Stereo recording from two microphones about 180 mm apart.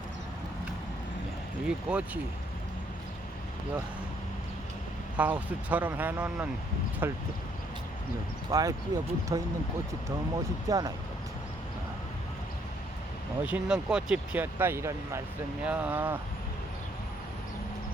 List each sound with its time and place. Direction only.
1.6 s speech: 5° right (ahead or behind)
5.1 s speech: 10° right (ahead or behind)
8.4 s speech: 20° right (ahead or behind)
10.7 s speech: 20° right (ahead or behind)
13.4 s speech: 5° right (ahead or behind)